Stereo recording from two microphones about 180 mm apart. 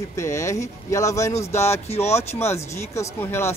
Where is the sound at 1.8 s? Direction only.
35° left (ahead or behind).